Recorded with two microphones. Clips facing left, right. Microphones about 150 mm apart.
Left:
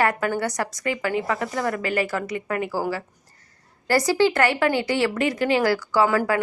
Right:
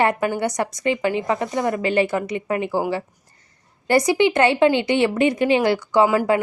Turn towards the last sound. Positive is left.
turn(degrees=-15)  # may be behind; listen again after turning